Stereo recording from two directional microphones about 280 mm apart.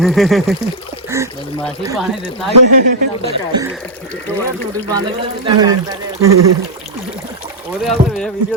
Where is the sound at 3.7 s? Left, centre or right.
Centre.